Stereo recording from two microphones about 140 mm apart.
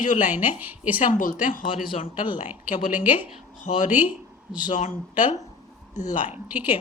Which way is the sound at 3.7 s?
50° left (ahead or behind).